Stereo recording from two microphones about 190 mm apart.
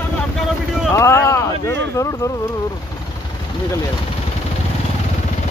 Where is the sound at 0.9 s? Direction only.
15° left (ahead or behind).